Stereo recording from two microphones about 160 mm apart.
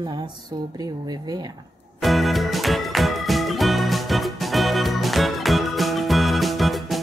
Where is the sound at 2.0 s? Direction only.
Centre (ahead or behind).